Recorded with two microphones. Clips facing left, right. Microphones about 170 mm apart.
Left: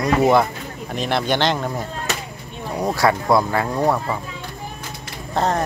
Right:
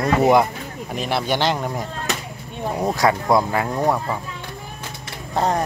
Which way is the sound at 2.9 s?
20° right (ahead or behind).